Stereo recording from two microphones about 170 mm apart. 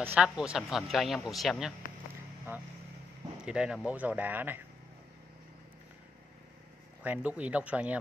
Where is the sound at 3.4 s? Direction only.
5° right (ahead or behind).